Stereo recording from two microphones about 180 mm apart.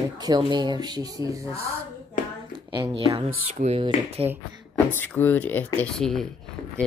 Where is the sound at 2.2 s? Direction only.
50° left (ahead or behind).